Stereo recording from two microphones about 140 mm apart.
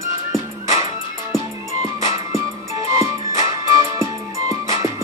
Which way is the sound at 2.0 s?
20° right (ahead or behind).